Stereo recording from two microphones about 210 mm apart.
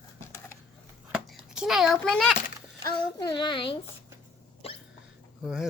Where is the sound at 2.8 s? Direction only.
20° left (ahead or behind).